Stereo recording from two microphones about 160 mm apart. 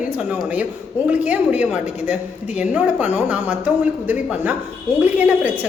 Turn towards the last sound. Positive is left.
turn(degrees=-10)  # may be behind; listen again after turning